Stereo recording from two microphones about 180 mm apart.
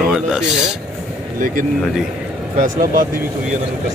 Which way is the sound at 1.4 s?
50° right (ahead or behind).